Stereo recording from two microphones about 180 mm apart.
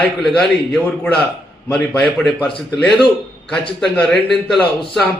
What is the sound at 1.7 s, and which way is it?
A man's voice, 5° left (ahead or behind).